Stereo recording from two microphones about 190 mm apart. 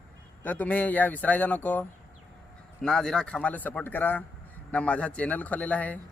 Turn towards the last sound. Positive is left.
turn(degrees=10)  # may be behind; listen again after turning